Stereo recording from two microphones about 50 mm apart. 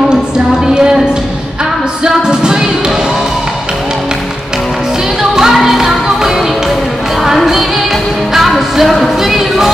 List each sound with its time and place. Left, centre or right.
2.0 s music: centre
5.3 s music: centre